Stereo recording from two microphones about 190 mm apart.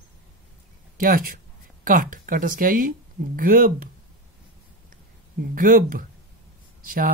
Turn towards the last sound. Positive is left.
turn(degrees=-50)  # may be behind; listen again after turning